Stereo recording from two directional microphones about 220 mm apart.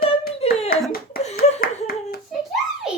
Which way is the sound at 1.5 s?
30° left (ahead or behind).